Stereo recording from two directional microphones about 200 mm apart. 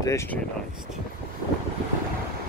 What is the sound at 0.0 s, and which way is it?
Speech, 15° left (ahead or behind).